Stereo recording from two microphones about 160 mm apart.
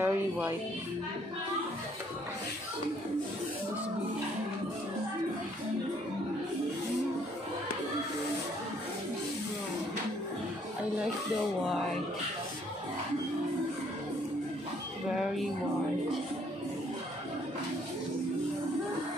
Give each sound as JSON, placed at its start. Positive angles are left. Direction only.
{"t": 0.0, "sound": "speech", "side_deg": -15}